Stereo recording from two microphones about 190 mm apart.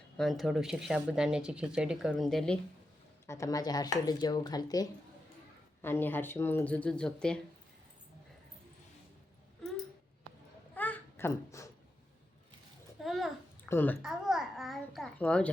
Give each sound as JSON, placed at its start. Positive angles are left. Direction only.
{"t": 0.2, "sound": "speech", "side_deg": 0}
{"t": 3.2, "sound": "speech", "side_deg": 15}
{"t": 10.8, "sound": "a sound", "side_deg": 10}
{"t": 13.0, "sound": "a sound", "side_deg": 0}
{"t": 13.7, "sound": "speech", "side_deg": 10}
{"t": 14.0, "sound": "babbling", "side_deg": 0}